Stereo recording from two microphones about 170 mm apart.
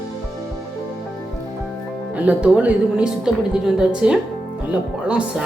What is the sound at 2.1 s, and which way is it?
A woman's voice, 10° right (ahead or behind).